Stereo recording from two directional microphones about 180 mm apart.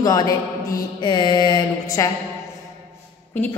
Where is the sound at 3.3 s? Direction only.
10° left (ahead or behind).